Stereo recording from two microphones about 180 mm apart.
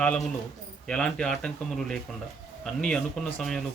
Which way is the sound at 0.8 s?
5° left (ahead or behind).